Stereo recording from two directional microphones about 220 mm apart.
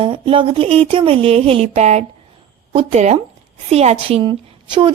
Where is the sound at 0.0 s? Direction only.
25° right (ahead or behind).